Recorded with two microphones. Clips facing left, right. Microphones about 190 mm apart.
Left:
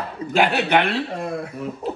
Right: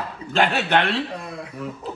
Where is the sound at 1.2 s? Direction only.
50° left (ahead or behind).